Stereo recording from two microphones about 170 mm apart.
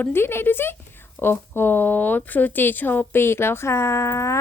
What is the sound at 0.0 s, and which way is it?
A woman's voice, 15° left (ahead or behind).